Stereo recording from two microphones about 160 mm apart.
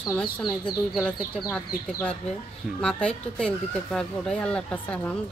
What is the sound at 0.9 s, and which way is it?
A man's voice, 5° left (ahead or behind).